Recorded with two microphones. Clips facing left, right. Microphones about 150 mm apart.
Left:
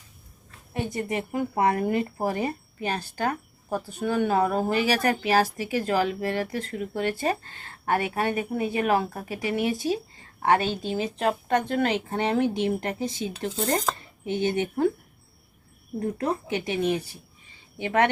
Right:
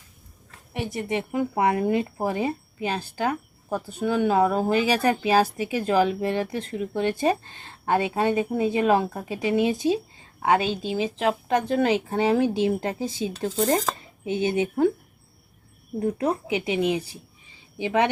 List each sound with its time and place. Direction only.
1.0 s speech: 15° right (ahead or behind)
3.7 s speech: 15° left (ahead or behind)
4.0 s speech: 15° right (ahead or behind)
16.0 s speech: 10° right (ahead or behind)